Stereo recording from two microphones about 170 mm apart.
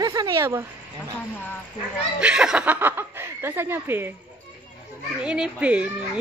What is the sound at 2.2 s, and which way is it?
Speech, 5° right (ahead or behind).